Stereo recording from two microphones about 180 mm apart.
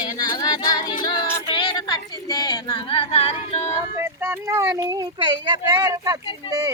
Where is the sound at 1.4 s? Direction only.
30° left (ahead or behind).